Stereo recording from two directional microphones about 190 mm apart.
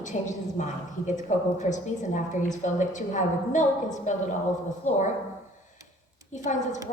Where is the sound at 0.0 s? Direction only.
40° left (ahead or behind).